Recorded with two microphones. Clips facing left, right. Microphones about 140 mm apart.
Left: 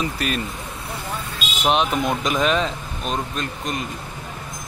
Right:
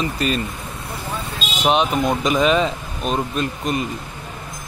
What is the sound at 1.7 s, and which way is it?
Speech, centre (ahead or behind).